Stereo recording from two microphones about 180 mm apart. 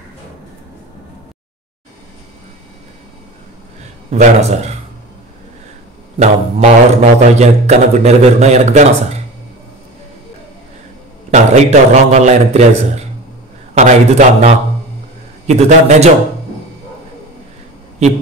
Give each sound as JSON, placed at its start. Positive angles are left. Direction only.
{"t": 4.1, "sound": "a man's voice", "side_deg": -40}
{"t": 6.1, "sound": "a man's voice", "side_deg": -40}
{"t": 11.2, "sound": "a man's voice", "side_deg": -40}